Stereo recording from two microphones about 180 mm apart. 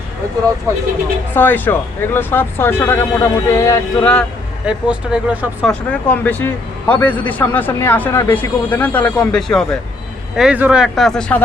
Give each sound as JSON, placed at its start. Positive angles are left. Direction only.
{"t": 1.3, "sound": "speech", "side_deg": 10}
{"t": 4.6, "sound": "speech", "side_deg": -5}
{"t": 5.9, "sound": "speech", "side_deg": 10}